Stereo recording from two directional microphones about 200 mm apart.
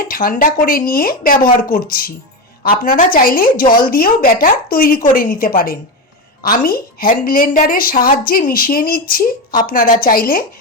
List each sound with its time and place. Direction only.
0.0 s speech: 45° left (ahead or behind)